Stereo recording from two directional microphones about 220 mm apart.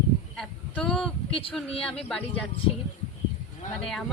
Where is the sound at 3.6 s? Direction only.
35° left (ahead or behind).